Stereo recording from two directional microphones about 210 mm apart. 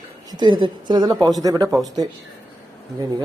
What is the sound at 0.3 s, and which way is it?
A woman's voice, 20° right (ahead or behind).